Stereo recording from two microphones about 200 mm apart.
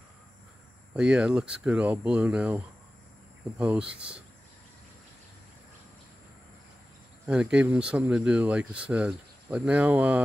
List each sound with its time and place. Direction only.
0.9 s speech: 5° right (ahead or behind)
7.2 s speech: 5° right (ahead or behind)